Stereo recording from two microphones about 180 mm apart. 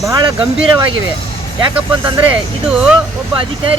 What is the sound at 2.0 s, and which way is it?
Speech, 25° right (ahead or behind).